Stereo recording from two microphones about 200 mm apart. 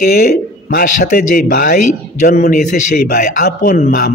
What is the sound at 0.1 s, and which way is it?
A man's voice, 50° left (ahead or behind).